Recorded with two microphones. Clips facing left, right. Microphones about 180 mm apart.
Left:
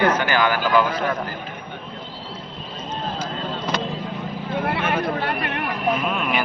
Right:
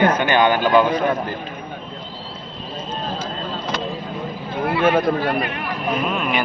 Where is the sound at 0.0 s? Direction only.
25° right (ahead or behind).